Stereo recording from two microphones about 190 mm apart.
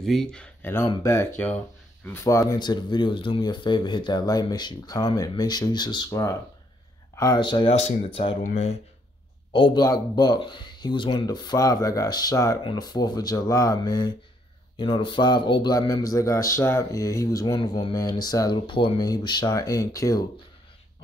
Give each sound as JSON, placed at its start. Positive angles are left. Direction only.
{"t": 0.0, "sound": "speech", "side_deg": 0}
{"t": 9.5, "sound": "speech", "side_deg": 25}